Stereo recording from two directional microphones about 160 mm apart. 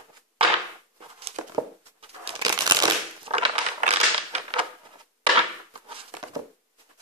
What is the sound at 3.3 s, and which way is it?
Crushing, 40° right (ahead or behind).